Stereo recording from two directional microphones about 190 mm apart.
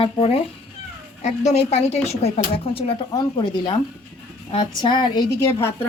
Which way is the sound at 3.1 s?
20° left (ahead or behind).